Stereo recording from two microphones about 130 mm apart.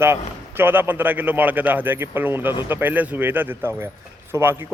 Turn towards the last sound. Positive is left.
turn(degrees=-15)  # may be behind; listen again after turning